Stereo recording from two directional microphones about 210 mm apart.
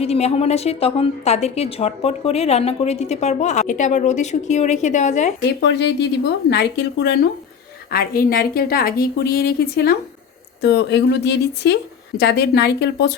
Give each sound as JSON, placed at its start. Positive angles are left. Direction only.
{"t": 0.0, "sound": "a woman's voice", "side_deg": 30}
{"t": 5.4, "sound": "a woman's voice", "side_deg": 55}